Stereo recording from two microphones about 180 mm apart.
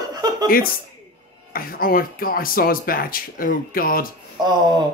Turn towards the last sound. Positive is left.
turn(degrees=-25)  # may be behind; listen again after turning